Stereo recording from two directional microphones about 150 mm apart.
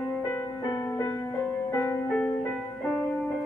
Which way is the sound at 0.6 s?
20° left (ahead or behind).